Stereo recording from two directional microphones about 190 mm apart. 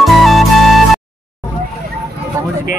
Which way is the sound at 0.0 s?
Centre (ahead or behind).